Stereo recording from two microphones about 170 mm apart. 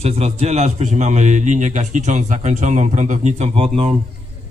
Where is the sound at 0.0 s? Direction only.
40° right (ahead or behind).